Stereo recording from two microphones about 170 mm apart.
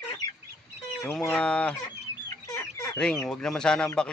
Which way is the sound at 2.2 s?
15° left (ahead or behind).